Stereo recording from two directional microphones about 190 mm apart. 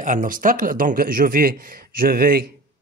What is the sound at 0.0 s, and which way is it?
A man's voice, 45° right (ahead or behind).